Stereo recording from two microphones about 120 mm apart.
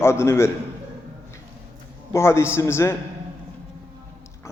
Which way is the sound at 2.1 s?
20° left (ahead or behind).